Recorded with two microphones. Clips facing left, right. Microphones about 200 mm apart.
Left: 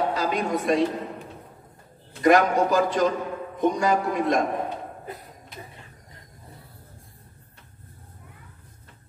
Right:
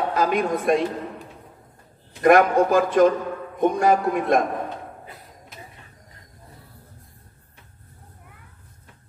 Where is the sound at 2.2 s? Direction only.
55° right (ahead or behind).